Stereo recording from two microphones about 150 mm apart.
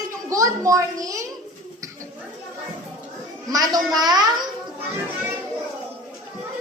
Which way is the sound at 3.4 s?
25° right (ahead or behind).